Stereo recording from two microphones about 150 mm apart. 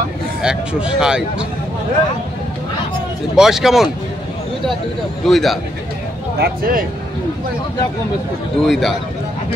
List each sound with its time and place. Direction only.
0.4 s speech: 5° right (ahead or behind)
3.3 s speech: 5° right (ahead or behind)
5.2 s speech: centre (ahead or behind)
6.3 s speech: 85° right
8.6 s speech: centre (ahead or behind)